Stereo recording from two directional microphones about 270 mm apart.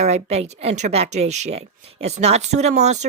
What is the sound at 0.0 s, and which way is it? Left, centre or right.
Speech, right.